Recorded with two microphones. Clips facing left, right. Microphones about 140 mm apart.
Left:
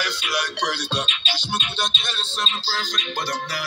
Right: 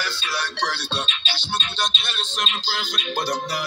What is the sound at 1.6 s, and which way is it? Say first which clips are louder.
Speech: even; centre (ahead or behind).